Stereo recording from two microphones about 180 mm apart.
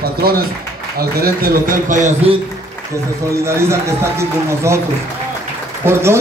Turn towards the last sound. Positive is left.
turn(degrees=-15)  # may be behind; listen again after turning